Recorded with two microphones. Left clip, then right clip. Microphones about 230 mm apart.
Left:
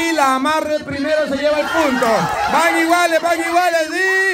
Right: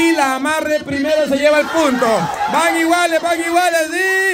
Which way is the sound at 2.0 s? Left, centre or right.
Centre.